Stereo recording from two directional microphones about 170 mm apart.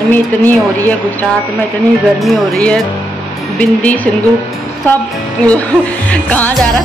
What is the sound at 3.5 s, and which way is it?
Speech, 10° left (ahead or behind).